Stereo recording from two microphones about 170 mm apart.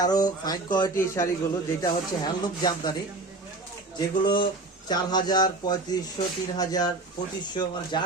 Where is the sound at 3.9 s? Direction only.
25° left (ahead or behind).